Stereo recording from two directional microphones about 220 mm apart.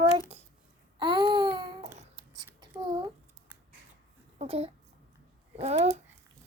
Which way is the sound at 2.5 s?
20° right (ahead or behind).